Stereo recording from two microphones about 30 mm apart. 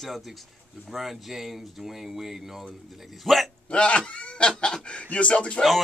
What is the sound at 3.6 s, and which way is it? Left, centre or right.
Speech, left.